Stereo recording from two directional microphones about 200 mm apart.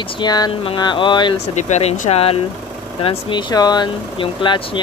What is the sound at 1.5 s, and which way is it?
Speech, 35° left (ahead or behind).